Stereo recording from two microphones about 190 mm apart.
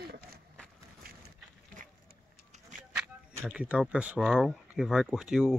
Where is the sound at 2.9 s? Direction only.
5° right (ahead or behind).